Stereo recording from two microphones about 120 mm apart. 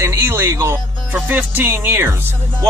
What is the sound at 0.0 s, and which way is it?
Speech, 20° right (ahead or behind).